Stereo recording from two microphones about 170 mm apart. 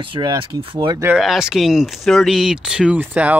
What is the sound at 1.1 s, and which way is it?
Speech, 5° right (ahead or behind).